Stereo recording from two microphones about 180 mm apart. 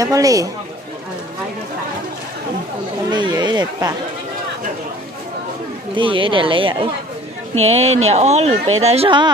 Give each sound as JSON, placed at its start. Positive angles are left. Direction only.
{"t": 0.0, "sound": "speech", "side_deg": -20}
{"t": 3.1, "sound": "speech", "side_deg": -25}
{"t": 5.9, "sound": "speech", "side_deg": -30}